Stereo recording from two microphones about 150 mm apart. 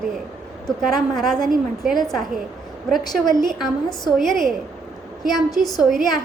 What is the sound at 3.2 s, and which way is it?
Speech, 30° left (ahead or behind).